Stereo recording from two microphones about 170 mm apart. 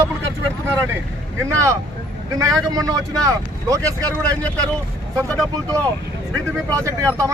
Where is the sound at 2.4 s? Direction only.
20° right (ahead or behind).